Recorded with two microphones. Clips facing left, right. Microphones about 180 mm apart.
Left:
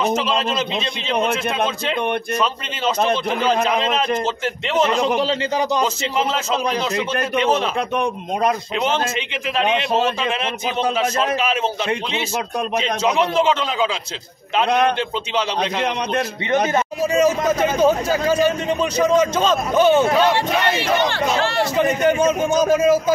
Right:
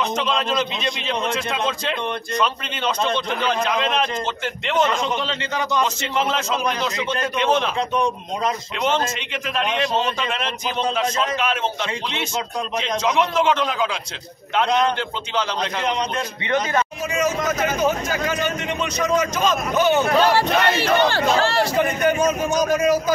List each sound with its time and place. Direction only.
4.9 s a man's voice: 35° left (ahead or behind)
7.0 s speech: 5° left (ahead or behind)
7.9 s speech: 60° left (ahead or behind)
13.1 s a man's voice: 30° left (ahead or behind)
15.8 s speech: 65° left (ahead or behind)
17.1 s a man's voice: 30° left (ahead or behind)
21.0 s speech: 35° right (ahead or behind)
21.7 s a man's voice: 25° left (ahead or behind)